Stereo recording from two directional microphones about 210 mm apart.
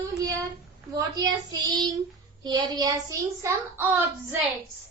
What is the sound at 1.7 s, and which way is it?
A child's voice, 20° right (ahead or behind).